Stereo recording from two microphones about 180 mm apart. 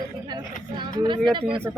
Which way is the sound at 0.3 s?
25° right (ahead or behind).